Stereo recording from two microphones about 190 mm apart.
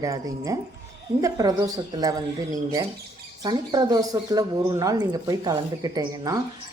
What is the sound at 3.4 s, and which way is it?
A woman's voice, 20° right (ahead or behind).